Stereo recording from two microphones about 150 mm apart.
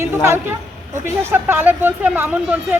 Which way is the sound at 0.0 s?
15° right (ahead or behind).